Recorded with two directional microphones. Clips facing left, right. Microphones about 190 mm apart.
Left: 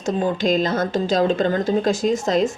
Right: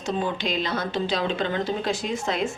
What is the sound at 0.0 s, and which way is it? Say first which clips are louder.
A woman's voice: left 6 dB; 45° left (ahead or behind).